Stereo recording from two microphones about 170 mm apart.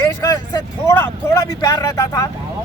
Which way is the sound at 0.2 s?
20° left (ahead or behind).